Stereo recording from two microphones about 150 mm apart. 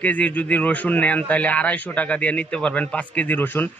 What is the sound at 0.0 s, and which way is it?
A man's voice, 10° left (ahead or behind).